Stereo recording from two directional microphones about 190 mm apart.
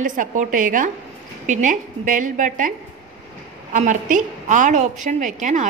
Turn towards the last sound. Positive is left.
turn(degrees=-40)  # may be behind; listen again after turning